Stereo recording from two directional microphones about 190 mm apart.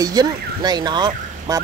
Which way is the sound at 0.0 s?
20° right (ahead or behind).